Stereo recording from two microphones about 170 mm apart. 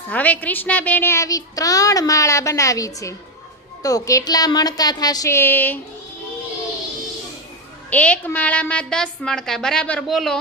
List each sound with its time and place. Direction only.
0.1 s a child's voice: 10° left (ahead or behind)
7.9 s a child's voice: 10° left (ahead or behind)